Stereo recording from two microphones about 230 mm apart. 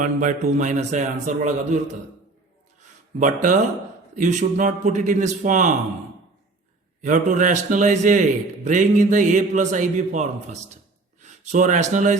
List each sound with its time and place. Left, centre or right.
0.0 s a man's voice: right
3.2 s a man's voice: right
7.0 s a man's voice: right